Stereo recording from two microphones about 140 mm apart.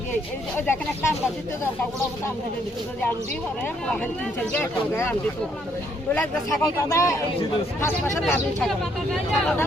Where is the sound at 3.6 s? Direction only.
10° left (ahead or behind).